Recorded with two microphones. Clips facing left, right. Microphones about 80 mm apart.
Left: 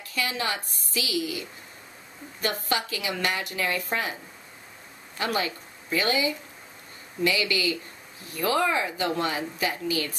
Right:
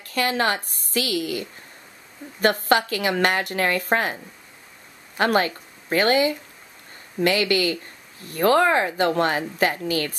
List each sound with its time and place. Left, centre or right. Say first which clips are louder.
0.0 s a woman's voice: right 7 dB; right